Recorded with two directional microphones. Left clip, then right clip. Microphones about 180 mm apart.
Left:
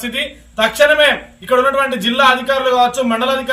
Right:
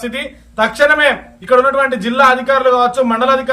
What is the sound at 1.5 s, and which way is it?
A man's voice, 10° right (ahead or behind).